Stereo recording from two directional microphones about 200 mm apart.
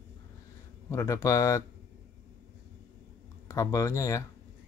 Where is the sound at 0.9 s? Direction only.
15° left (ahead or behind).